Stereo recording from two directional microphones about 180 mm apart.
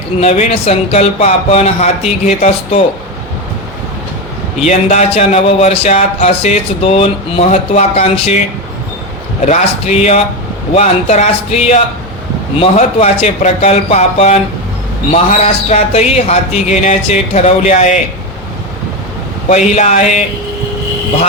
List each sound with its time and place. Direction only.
0.2 s speech: 40° left (ahead or behind)
4.6 s speech: 40° left (ahead or behind)
9.5 s speech: 35° left (ahead or behind)
19.5 s speech: 40° left (ahead or behind)